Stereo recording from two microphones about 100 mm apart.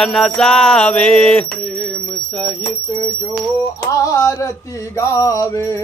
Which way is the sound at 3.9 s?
35° left (ahead or behind).